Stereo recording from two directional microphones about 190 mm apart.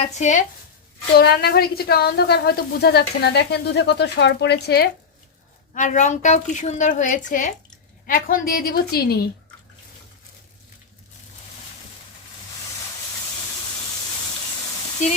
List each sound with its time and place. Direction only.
0.0 s a woman's voice: 40° left (ahead or behind)
1.1 s a woman's voice: 55° left (ahead or behind)
5.7 s a woman's voice: 40° left (ahead or behind)